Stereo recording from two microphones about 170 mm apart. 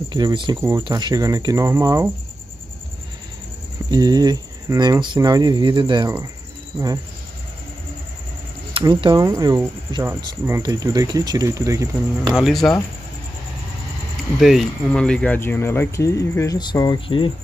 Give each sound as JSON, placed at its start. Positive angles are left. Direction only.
{"t": 0.1, "sound": "speech", "side_deg": -25}
{"t": 0.6, "sound": "speech", "side_deg": -15}
{"t": 3.9, "sound": "speech", "side_deg": -25}
{"t": 8.7, "sound": "speech", "side_deg": -25}
{"t": 12.4, "sound": "speech", "side_deg": 0}
{"t": 14.4, "sound": "speech", "side_deg": 0}